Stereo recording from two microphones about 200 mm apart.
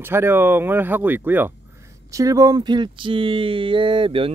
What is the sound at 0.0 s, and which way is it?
Speech, 10° right (ahead or behind).